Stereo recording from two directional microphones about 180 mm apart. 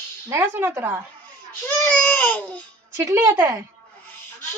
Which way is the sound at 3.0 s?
15° right (ahead or behind).